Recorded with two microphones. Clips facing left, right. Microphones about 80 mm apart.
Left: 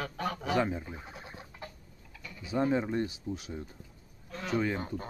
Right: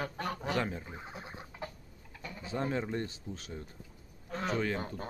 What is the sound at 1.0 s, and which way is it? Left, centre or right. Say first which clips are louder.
Chicken: right 1 dB; right.